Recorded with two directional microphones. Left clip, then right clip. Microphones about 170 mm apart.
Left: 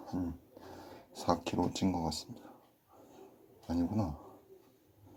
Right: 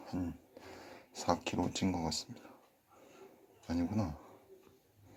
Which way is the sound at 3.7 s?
Centre (ahead or behind).